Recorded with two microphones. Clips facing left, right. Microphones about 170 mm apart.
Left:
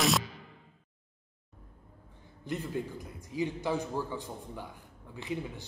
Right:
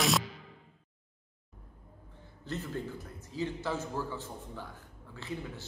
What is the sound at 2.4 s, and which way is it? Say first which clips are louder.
A man's voice: left 2 dB; 15° left (ahead or behind).